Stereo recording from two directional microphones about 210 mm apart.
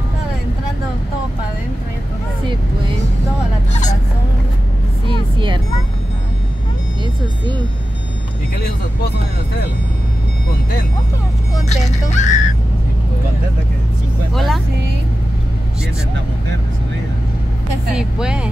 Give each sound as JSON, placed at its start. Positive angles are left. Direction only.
{"t": 5.0, "sound": "music", "side_deg": -25}
{"t": 11.7, "sound": "speech", "side_deg": 35}
{"t": 14.3, "sound": "vehicle", "side_deg": 0}
{"t": 17.9, "sound": "speech", "side_deg": -5}